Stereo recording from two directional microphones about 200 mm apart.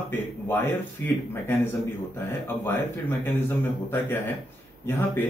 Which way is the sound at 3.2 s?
10° left (ahead or behind).